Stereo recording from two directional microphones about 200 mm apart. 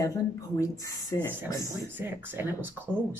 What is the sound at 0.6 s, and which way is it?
Speech, 15° left (ahead or behind).